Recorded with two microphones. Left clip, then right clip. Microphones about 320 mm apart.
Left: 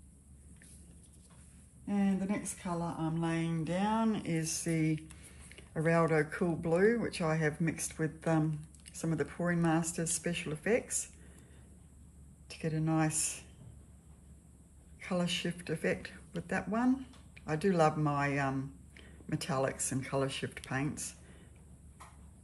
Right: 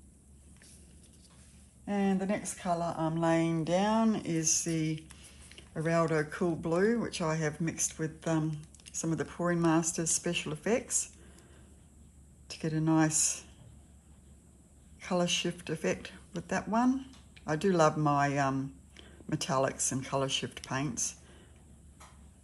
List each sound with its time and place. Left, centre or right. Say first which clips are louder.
1.9 s a sound: right 4 dB; right
2.8 s speech: right 6 dB; right
12.4 s speech: right 4 dB; centre
15.0 s speech: right 5 dB; centre